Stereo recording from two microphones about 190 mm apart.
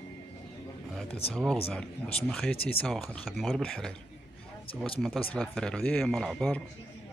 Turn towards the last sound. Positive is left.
turn(degrees=5)  # may be behind; listen again after turning